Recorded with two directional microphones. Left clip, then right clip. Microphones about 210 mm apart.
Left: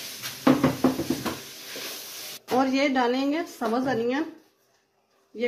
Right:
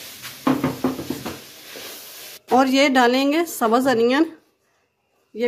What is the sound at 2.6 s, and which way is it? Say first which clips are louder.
Speech: right 7 dB; 55° right (ahead or behind).